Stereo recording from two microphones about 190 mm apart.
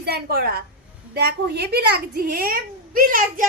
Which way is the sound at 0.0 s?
55° right (ahead or behind).